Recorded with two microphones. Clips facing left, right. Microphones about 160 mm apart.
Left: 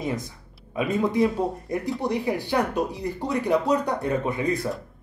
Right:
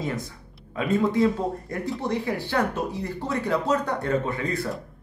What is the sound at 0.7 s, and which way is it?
Speech, 15° left (ahead or behind).